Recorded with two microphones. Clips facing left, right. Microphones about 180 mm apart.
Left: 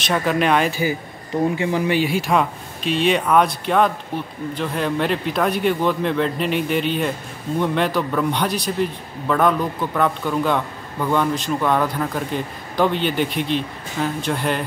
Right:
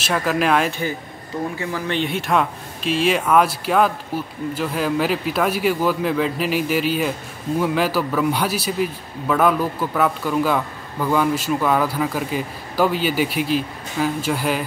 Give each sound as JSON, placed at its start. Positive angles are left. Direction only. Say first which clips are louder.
{"t": 0.0, "sound": "speech", "louder": "left 1 dB", "side_deg": -5}
{"t": 1.6, "sound": "speech", "louder": "left 5 dB", "side_deg": 20}
{"t": 2.0, "sound": "speech", "louder": "left 2 dB", "side_deg": 0}